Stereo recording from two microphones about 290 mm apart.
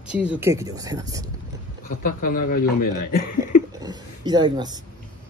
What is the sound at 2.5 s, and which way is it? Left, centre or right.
Speech, left.